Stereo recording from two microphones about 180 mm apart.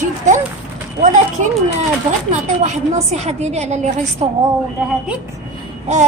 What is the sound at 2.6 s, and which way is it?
A woman's voice, 40° right (ahead or behind).